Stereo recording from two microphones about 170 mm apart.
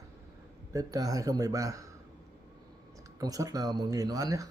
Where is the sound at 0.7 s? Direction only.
20° right (ahead or behind).